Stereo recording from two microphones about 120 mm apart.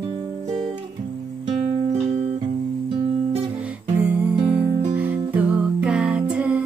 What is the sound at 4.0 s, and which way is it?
Music, 15° right (ahead or behind).